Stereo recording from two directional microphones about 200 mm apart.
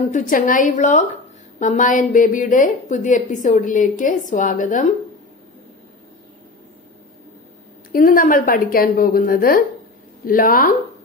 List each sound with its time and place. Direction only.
0.1 s a woman's voice: 40° left (ahead or behind)
7.9 s a woman's voice: 45° left (ahead or behind)